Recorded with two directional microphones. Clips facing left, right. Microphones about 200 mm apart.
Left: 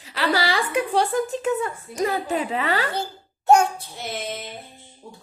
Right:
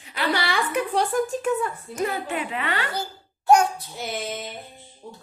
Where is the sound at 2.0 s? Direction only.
35° left (ahead or behind).